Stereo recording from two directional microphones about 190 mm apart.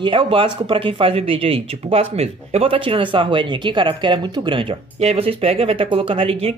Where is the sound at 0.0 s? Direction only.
25° right (ahead or behind).